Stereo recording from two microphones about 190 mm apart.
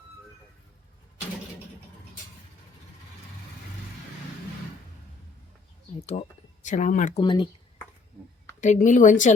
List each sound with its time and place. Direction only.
6.0 s speech: 35° left (ahead or behind)
7.2 s speech: 25° left (ahead or behind)
8.6 s speech: 40° left (ahead or behind)